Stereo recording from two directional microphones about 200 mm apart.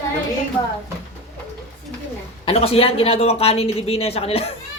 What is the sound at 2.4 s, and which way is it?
Speech, 30° left (ahead or behind).